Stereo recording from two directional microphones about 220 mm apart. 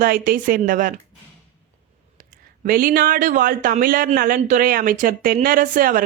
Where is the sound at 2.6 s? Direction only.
40° right (ahead or behind).